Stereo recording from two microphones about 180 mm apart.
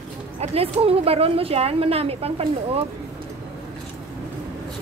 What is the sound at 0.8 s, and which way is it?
Speech, 35° right (ahead or behind).